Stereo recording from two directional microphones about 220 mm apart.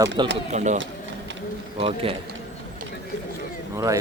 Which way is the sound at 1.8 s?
25° right (ahead or behind).